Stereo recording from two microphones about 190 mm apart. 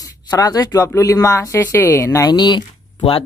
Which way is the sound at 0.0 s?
20° left (ahead or behind).